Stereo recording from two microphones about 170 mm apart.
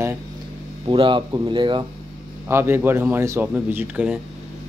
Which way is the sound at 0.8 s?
30° right (ahead or behind).